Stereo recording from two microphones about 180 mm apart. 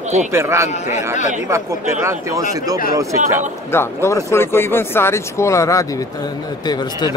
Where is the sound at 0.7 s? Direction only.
40° left (ahead or behind).